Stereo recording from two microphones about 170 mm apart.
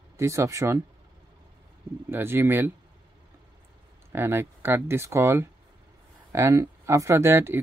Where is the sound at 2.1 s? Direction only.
15° right (ahead or behind).